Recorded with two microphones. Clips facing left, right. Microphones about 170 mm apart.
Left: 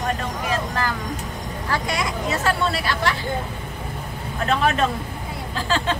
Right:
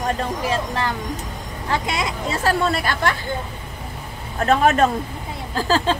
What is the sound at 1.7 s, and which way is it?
Speech, 20° right (ahead or behind).